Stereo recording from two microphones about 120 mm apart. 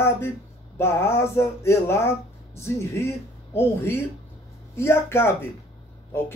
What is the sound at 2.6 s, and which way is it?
Speech, 25° left (ahead or behind).